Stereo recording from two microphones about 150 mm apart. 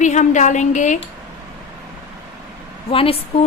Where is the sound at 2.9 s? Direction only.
40° left (ahead or behind).